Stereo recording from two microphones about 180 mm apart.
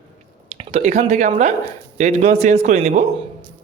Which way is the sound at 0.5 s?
35° right (ahead or behind).